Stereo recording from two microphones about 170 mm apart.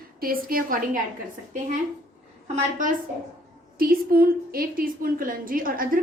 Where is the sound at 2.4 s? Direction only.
45° right (ahead or behind).